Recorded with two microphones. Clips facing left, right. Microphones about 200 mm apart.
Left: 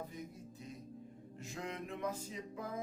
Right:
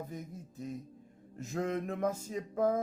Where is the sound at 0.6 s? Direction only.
45° right (ahead or behind).